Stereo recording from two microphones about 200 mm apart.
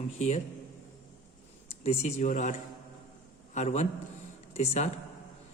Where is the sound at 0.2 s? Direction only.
35° left (ahead or behind).